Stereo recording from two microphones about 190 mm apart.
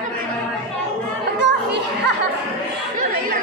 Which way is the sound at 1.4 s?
65° right (ahead or behind).